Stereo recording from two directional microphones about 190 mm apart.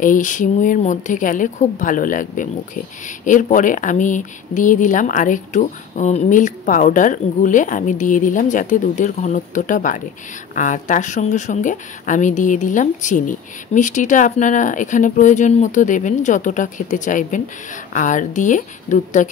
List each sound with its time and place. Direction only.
0.0 s speech: 45° left (ahead or behind)